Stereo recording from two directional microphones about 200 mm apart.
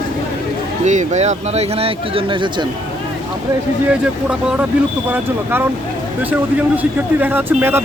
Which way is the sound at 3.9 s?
5° right (ahead or behind).